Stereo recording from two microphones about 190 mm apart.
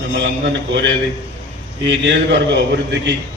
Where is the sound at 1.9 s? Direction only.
70° right (ahead or behind).